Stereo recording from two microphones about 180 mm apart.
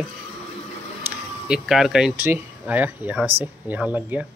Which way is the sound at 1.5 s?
5° right (ahead or behind).